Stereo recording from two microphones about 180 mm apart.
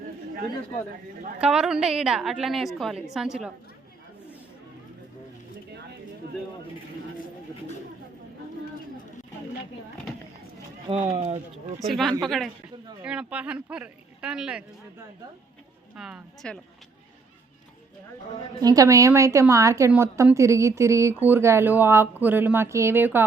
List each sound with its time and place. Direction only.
1.4 s a woman's voice: 5° right (ahead or behind)
11.1 s speech: 35° right (ahead or behind)
11.9 s a woman's voice: centre (ahead or behind)
16.0 s a woman's voice: 5° right (ahead or behind)
18.6 s a woman's voice: 20° right (ahead or behind)